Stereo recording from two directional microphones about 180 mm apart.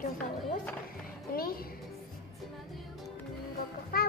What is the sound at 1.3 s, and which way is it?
Speech, 55° left (ahead or behind).